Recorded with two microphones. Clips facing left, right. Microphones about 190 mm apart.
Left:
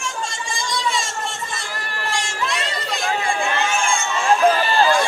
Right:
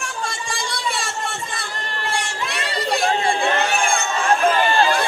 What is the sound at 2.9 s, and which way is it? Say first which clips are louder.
Chatter: right 3 dB; 35° right (ahead or behind).